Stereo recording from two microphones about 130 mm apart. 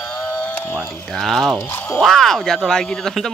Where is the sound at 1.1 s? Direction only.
Centre (ahead or behind).